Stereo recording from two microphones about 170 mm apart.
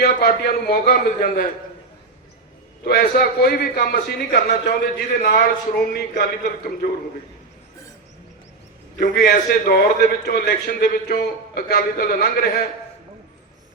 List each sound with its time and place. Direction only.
0.0 s a man's voice: 65° left (ahead or behind)
2.8 s a man's voice: 60° left (ahead or behind)
9.0 s a man's voice: 65° left (ahead or behind)